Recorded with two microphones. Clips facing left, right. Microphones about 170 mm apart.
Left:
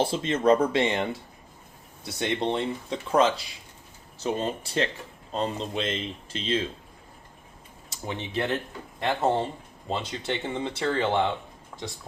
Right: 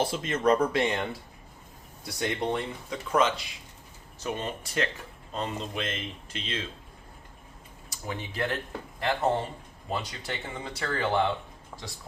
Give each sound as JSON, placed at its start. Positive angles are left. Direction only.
{"t": 0.0, "sound": "speech", "side_deg": 30}
{"t": 2.0, "sound": "speech", "side_deg": 25}
{"t": 7.9, "sound": "speech", "side_deg": 25}
{"t": 11.7, "sound": "speech", "side_deg": -10}